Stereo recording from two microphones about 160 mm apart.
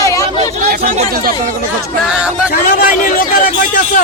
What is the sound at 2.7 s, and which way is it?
Speech, 60° left (ahead or behind).